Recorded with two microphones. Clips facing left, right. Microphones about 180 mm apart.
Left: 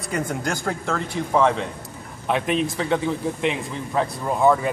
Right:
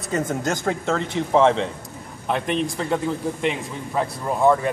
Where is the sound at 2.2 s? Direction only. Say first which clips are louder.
Left 1 dB; centre (ahead or behind).